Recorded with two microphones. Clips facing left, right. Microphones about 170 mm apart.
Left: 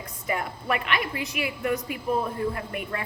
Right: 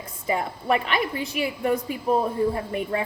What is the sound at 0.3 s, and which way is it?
A woman's voice, 30° right (ahead or behind).